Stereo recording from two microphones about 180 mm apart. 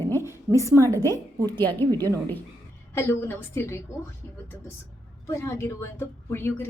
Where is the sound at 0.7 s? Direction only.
15° right (ahead or behind).